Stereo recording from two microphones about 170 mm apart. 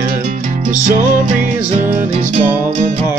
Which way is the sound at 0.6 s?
50° right (ahead or behind).